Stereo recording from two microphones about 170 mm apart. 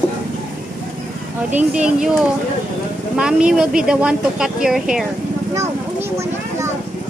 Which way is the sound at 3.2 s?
5° right (ahead or behind).